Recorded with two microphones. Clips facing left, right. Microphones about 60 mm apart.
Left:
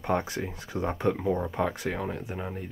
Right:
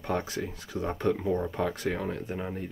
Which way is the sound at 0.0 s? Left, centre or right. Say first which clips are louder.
Left 2 dB; left.